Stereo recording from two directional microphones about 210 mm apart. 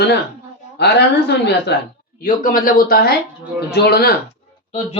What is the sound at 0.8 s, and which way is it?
Speech, 55° left (ahead or behind).